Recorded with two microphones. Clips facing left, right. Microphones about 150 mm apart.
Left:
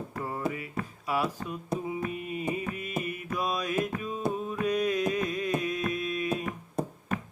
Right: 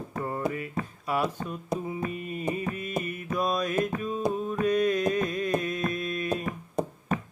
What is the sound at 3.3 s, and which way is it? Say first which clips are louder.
Mantra: right 4 dB; 5° left (ahead or behind).